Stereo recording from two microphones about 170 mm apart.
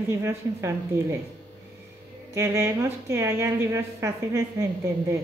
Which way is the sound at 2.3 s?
15° right (ahead or behind).